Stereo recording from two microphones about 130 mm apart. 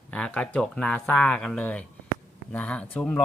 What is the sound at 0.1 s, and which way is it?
Speech, 10° left (ahead or behind).